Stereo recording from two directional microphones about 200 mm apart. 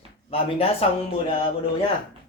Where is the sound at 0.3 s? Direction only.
30° left (ahead or behind).